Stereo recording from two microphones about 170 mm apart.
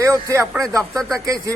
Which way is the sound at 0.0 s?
20° right (ahead or behind).